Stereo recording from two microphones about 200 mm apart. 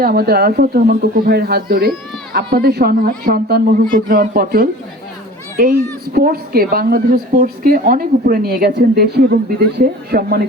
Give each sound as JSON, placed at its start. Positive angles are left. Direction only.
{"t": 0.0, "sound": "a woman's voice", "side_deg": -50}